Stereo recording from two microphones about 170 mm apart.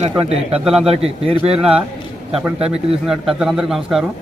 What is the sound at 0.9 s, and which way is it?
Speech, 35° right (ahead or behind).